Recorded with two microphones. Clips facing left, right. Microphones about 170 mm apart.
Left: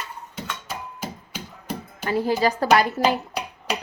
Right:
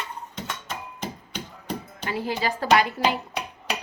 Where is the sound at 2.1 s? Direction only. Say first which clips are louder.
Left 6 dB; 40° left (ahead or behind).